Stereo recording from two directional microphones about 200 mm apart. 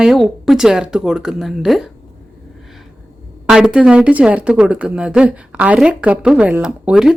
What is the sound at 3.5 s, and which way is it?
A woman's voice, 5° right (ahead or behind).